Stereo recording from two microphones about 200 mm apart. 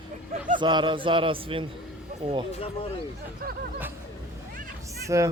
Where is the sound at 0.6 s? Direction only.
25° right (ahead or behind).